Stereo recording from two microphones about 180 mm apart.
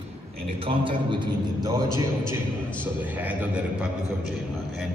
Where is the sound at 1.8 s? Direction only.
25° left (ahead or behind).